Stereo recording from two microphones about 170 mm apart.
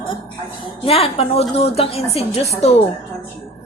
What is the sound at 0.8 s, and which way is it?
A woman's voice, 35° left (ahead or behind).